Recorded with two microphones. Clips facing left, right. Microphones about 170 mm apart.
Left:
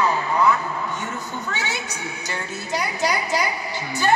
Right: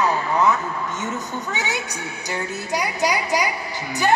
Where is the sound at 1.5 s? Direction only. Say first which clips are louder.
Right 2 dB; 15° right (ahead or behind).